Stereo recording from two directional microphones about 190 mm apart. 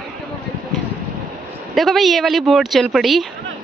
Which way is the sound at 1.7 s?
Centre (ahead or behind).